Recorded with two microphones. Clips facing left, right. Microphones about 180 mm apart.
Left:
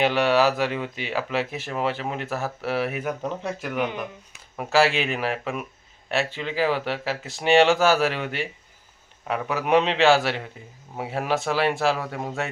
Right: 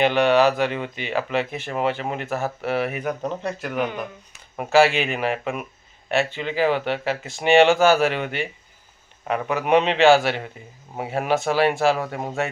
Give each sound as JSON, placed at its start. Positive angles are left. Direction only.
{"t": 0.0, "sound": "speech", "side_deg": 5}
{"t": 4.5, "sound": "speech", "side_deg": -5}